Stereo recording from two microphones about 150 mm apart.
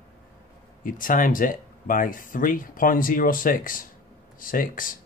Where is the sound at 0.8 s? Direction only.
65° left (ahead or behind).